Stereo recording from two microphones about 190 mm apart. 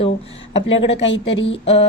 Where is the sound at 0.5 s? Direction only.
70° left (ahead or behind).